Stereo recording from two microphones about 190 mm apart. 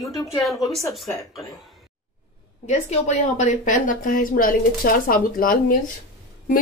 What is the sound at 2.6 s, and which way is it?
A woman's voice, 40° left (ahead or behind).